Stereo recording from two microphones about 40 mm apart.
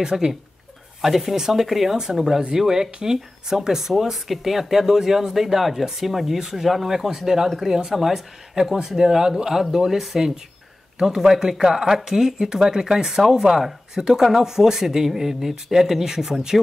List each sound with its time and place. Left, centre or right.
0.0 s speech: centre